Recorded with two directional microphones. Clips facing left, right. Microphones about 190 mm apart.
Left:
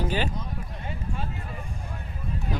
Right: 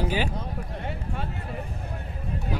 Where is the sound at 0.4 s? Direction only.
60° right (ahead or behind).